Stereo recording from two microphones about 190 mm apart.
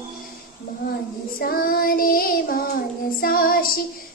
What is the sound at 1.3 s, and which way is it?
Female singing, 50° left (ahead or behind).